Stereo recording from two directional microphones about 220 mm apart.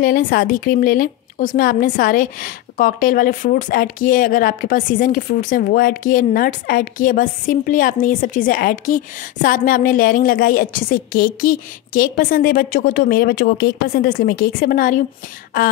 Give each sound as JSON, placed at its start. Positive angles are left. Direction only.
{"t": 0.0, "sound": "a woman's voice", "side_deg": 40}